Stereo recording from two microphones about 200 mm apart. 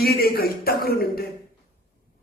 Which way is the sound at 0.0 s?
50° left (ahead or behind).